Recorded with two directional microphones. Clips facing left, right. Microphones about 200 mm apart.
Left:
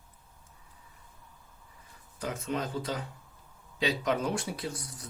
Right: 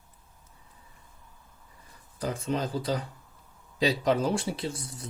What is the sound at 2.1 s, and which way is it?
Speech, 35° right (ahead or behind).